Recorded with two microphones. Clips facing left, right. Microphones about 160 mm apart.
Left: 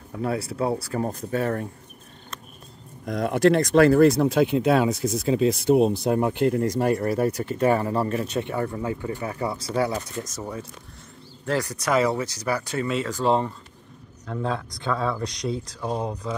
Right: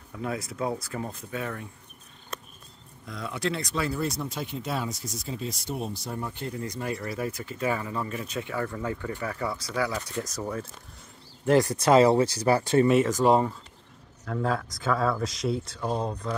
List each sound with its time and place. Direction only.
0.1 s speech: 30° left (ahead or behind)
3.1 s speech: 50° left (ahead or behind); by 6.6 s 75° left (ahead or behind)
6.6 s speech: 50° left (ahead or behind); by 10.3 s 25° left (ahead or behind)
11.4 s speech: 20° right (ahead or behind)
13.2 s speech: 10° right (ahead or behind)